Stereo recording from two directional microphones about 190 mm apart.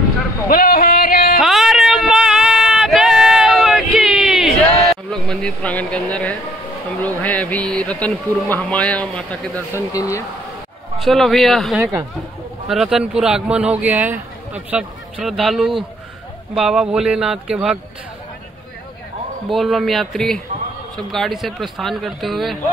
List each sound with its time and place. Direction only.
0.5 s a sound: 50° left (ahead or behind)
1.4 s a sound: centre (ahead or behind)
5.1 s speech: 5° left (ahead or behind)
9.8 s speech: 15° left (ahead or behind)
11.0 s a man's voice: centre (ahead or behind)
19.5 s a man's voice: centre (ahead or behind)